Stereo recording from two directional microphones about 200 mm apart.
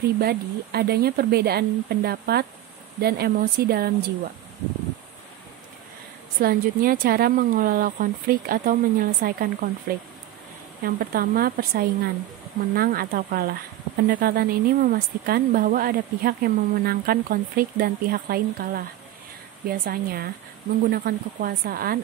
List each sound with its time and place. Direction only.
0.0 s speech: 50° right (ahead or behind)
6.4 s speech: 45° right (ahead or behind)
10.8 s speech: 45° right (ahead or behind)